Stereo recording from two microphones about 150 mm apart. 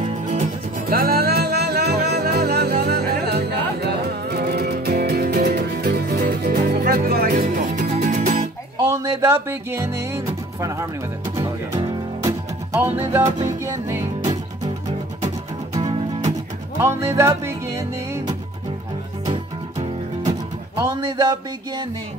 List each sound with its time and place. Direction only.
0.0 s music: 55° right (ahead or behind)
8.7 s music: 20° right (ahead or behind)
12.3 s music: 15° right (ahead or behind)
15.9 s music: 35° right (ahead or behind)
16.7 s music: 15° right (ahead or behind)
20.7 s a sound: 25° right (ahead or behind)